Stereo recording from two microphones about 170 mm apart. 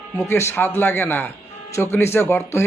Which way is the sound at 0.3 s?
15° left (ahead or behind).